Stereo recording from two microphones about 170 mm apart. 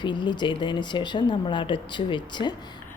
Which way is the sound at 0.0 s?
25° left (ahead or behind).